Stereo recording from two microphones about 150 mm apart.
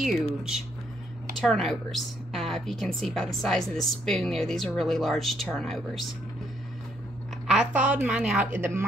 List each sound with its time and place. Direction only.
0.0 s a woman's voice: centre (ahead or behind)
7.4 s a woman's voice: 10° right (ahead or behind)